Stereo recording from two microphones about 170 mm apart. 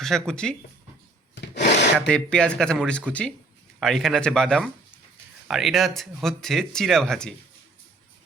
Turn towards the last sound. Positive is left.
turn(degrees=5)  # may be behind; listen again after turning